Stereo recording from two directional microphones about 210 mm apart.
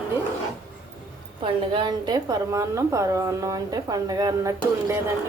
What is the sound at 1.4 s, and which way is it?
A woman's voice, 20° right (ahead or behind).